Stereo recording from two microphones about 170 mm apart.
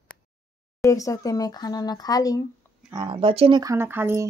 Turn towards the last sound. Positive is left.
turn(degrees=-15)  # may be behind; listen again after turning